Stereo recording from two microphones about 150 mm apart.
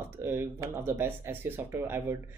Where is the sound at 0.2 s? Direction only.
15° right (ahead or behind).